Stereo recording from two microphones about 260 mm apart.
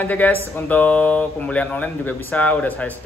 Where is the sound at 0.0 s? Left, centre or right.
Centre.